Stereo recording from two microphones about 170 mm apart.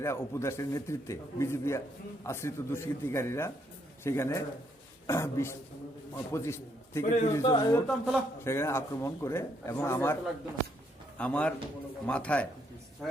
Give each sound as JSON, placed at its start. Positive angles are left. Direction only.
{"t": 0.0, "sound": "a man's voice", "side_deg": 15}
{"t": 7.0, "sound": "a man's voice", "side_deg": 50}
{"t": 7.3, "sound": "speech", "side_deg": 20}
{"t": 7.9, "sound": "a man's voice", "side_deg": 0}
{"t": 8.4, "sound": "a man's voice", "side_deg": 15}
{"t": 11.2, "sound": "a man's voice", "side_deg": 5}